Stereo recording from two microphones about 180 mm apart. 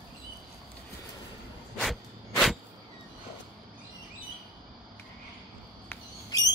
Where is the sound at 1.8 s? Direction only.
Centre (ahead or behind).